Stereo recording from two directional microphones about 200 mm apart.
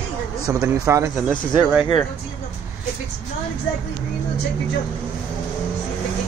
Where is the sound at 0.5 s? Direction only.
15° right (ahead or behind).